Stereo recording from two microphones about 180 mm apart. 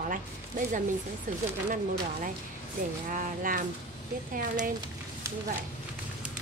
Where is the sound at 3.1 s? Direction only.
50° right (ahead or behind).